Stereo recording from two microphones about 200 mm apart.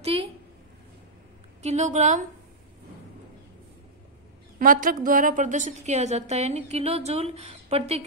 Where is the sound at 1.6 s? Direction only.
35° right (ahead or behind).